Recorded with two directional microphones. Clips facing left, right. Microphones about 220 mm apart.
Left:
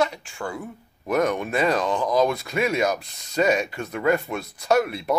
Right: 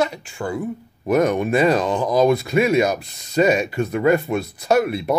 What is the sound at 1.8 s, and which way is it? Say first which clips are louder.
Speech: right 4 dB; 5° right (ahead or behind).